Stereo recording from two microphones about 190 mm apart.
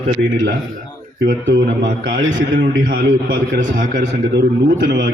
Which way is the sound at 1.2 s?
70° right (ahead or behind).